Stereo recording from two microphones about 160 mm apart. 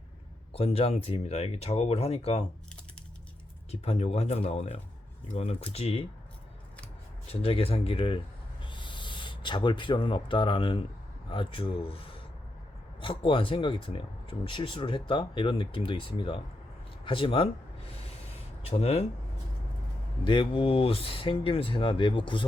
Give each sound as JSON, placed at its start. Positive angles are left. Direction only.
{"t": 0.5, "sound": "speech", "side_deg": 40}
{"t": 3.7, "sound": "speech", "side_deg": 40}
{"t": 7.3, "sound": "speech", "side_deg": 35}
{"t": 8.6, "sound": "owl", "side_deg": 30}
{"t": 11.3, "sound": "speech", "side_deg": 35}
{"t": 17.9, "sound": "a sound", "side_deg": 40}
{"t": 20.2, "sound": "speech", "side_deg": 30}